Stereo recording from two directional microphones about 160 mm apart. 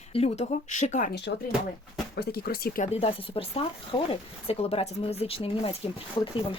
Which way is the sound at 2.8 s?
40° left (ahead or behind).